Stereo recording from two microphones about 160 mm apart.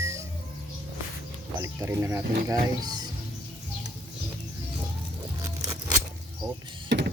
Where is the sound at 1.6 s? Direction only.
15° right (ahead or behind).